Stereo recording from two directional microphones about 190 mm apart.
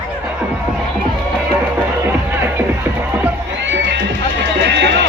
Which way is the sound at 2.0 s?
10° right (ahead or behind).